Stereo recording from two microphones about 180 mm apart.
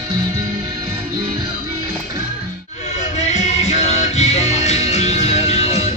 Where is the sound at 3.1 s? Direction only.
40° left (ahead or behind).